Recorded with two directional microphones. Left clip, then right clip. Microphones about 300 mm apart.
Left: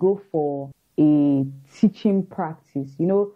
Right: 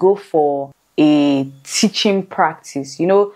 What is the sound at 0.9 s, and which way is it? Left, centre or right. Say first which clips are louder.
Speech: right 5 dB; centre.